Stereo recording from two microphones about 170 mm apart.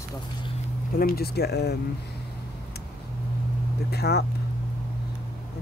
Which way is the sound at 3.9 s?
70° left (ahead or behind).